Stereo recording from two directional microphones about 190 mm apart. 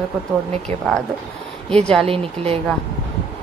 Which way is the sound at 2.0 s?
30° right (ahead or behind).